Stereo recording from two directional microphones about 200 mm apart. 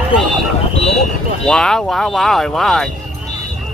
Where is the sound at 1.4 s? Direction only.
5° left (ahead or behind).